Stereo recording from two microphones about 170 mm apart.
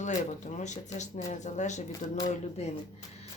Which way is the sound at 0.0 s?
45° left (ahead or behind).